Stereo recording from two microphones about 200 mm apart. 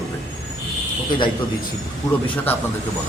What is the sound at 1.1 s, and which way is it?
Speech, 25° left (ahead or behind).